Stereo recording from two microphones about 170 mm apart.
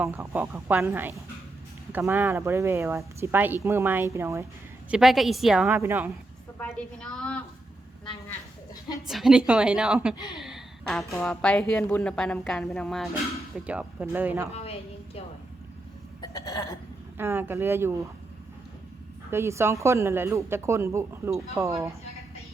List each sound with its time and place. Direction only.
0.0 s speech: 15° right (ahead or behind)
4.9 s speech: 5° right (ahead or behind)
5.7 s speech: 15° right (ahead or behind)
6.6 s a woman's voice: 5° left (ahead or behind)
9.0 s speech: centre (ahead or behind)
10.3 s a sound: centre (ahead or behind)
11.2 s speech: 5° left (ahead or behind)
13.7 s speech: 10° right (ahead or behind)
14.5 s a woman's voice: 35° left (ahead or behind)
16.2 s burping: 20° left (ahead or behind)
17.2 s speech: 15° right (ahead or behind)
19.3 s speech: 15° right (ahead or behind)